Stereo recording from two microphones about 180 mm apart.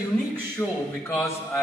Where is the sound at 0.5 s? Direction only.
15° left (ahead or behind).